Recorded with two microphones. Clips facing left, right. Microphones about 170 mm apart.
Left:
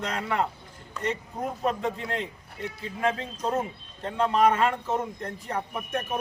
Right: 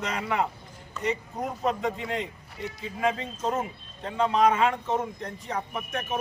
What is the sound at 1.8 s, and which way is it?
Speech, centre (ahead or behind).